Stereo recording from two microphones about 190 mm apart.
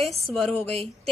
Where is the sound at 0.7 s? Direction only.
30° right (ahead or behind).